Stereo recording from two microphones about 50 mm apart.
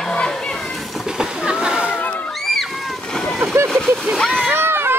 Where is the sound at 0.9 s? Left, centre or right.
Centre.